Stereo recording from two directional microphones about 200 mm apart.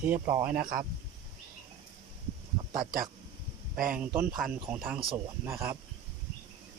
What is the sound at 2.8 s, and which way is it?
Speech, 45° right (ahead or behind).